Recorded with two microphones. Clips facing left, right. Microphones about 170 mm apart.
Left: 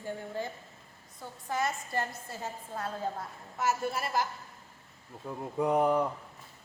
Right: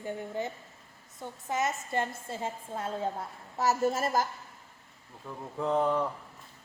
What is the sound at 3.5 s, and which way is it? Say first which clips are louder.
Speech: right 4 dB; 40° right (ahead or behind).